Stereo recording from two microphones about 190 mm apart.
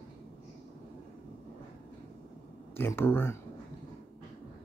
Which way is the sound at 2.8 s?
10° left (ahead or behind).